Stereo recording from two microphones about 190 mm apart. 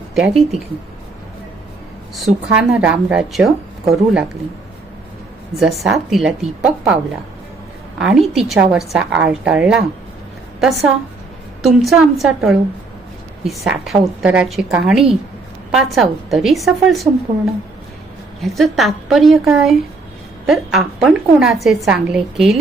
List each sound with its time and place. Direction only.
0.1 s speech: centre (ahead or behind)
2.1 s speech: 5° right (ahead or behind)
5.5 s speech: centre (ahead or behind)
7.9 s a woman's voice: 5° right (ahead or behind)
18.3 s speech: centre (ahead or behind)